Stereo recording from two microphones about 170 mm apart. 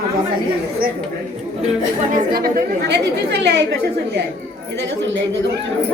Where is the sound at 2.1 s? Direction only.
55° right (ahead or behind).